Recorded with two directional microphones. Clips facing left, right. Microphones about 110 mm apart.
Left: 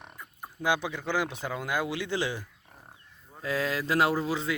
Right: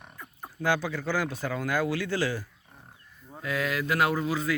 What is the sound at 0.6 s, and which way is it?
Speech, 15° left (ahead or behind).